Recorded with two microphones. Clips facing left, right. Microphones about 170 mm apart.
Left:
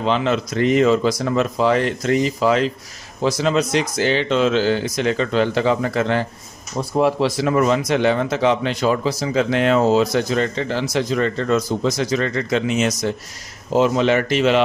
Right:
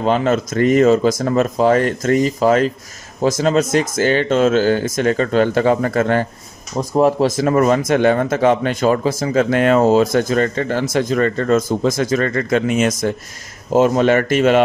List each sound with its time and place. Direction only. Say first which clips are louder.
0.0 s speech: right 3 dB; 45° right (ahead or behind)